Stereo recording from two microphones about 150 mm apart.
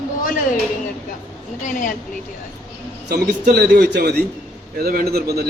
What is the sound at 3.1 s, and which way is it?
A man's voice, 90° right.